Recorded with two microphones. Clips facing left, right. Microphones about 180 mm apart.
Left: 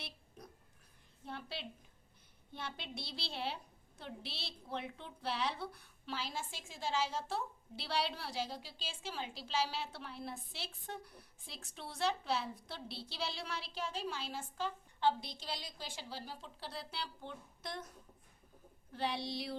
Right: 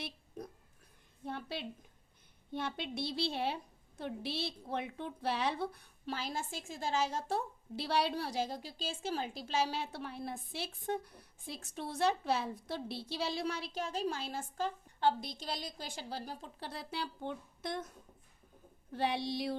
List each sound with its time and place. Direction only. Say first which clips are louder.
1.2 s a sound: right 5 dB; 50° right (ahead or behind)
2.5 s a woman's voice: right 7 dB; 50° right (ahead or behind)
19.0 s a woman's voice: right 4 dB; 55° right (ahead or behind)